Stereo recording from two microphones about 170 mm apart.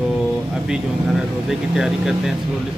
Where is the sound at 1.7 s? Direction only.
Centre (ahead or behind).